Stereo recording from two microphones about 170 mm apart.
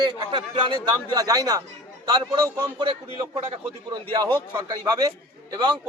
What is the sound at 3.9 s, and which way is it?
A man's voice, 25° right (ahead or behind).